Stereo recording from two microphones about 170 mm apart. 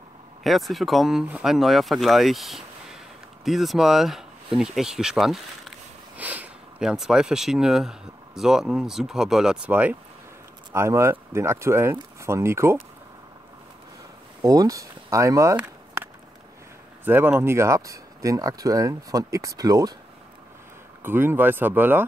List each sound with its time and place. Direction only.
0.4 s speech: centre (ahead or behind); by 12.7 s 15° right (ahead or behind)
14.4 s speech: 20° right (ahead or behind)
15.5 s a sound: 10° right (ahead or behind)
17.0 s speech: 10° right (ahead or behind)
21.0 s speech: 15° right (ahead or behind)